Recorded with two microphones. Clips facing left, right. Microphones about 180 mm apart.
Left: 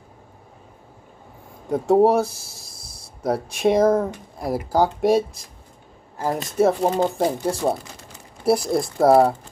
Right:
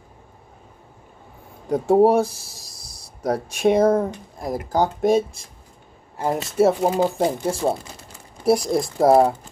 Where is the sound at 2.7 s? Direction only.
30° left (ahead or behind).